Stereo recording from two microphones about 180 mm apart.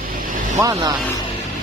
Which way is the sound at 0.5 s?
20° right (ahead or behind).